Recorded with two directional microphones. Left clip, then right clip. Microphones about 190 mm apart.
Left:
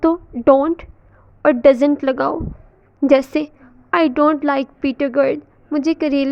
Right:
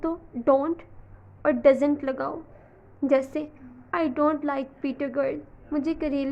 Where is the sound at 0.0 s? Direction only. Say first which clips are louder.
Left 11 dB; 40° left (ahead or behind).